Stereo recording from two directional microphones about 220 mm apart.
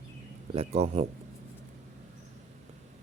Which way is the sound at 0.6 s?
30° right (ahead or behind).